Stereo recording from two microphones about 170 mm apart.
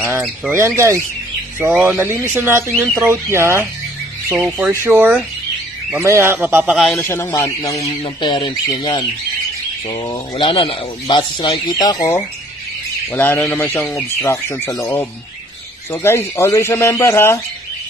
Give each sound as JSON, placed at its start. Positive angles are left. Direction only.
{"t": 0.5, "sound": "a man's voice", "side_deg": -15}
{"t": 7.0, "sound": "a man's voice", "side_deg": 15}
{"t": 8.0, "sound": "a man's voice", "side_deg": 30}